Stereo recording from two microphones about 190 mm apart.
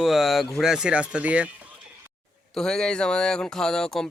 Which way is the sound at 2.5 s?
5° left (ahead or behind).